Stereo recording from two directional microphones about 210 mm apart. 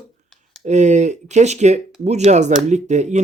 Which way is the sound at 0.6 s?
35° right (ahead or behind).